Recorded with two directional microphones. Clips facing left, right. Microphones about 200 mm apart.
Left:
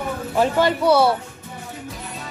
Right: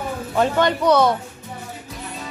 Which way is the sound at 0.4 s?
5° left (ahead or behind).